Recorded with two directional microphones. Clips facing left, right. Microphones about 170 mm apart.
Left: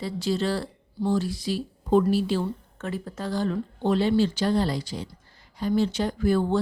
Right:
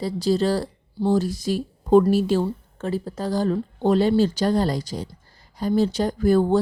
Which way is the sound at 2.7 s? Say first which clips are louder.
Right 5 dB; 35° right (ahead or behind).